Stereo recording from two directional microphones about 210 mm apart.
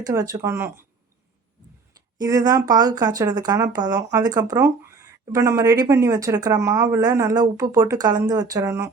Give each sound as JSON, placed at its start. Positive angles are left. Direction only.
{"t": 0.0, "sound": "speech", "side_deg": -15}
{"t": 2.1, "sound": "speech", "side_deg": -15}